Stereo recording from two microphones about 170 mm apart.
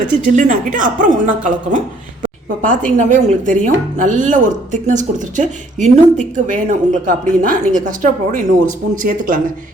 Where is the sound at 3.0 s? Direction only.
45° right (ahead or behind).